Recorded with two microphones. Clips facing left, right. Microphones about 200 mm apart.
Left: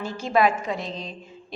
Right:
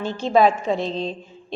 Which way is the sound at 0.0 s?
25° right (ahead or behind).